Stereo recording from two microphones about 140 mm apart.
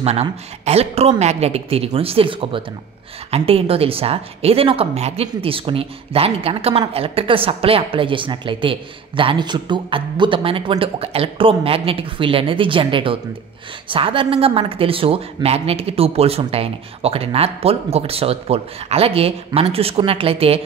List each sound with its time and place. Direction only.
0.0 s a woman's voice: 50° right (ahead or behind)